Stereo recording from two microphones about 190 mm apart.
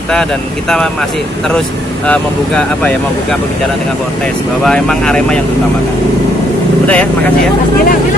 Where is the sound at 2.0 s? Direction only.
5° left (ahead or behind).